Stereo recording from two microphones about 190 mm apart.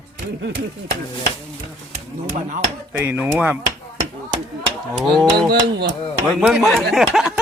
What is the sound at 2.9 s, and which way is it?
Dishes, 10° right (ahead or behind).